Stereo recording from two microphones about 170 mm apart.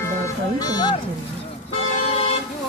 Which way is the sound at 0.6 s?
25° left (ahead or behind).